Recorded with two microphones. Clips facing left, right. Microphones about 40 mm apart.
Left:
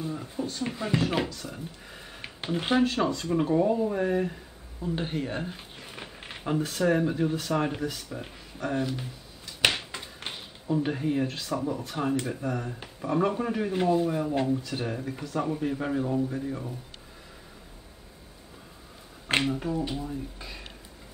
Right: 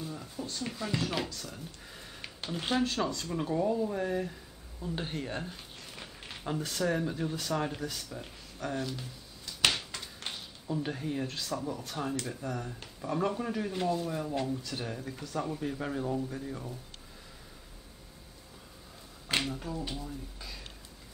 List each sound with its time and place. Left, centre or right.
0.0 s speech: left
9.7 s a sound: left
11.8 s speech: left
19.4 s speech: left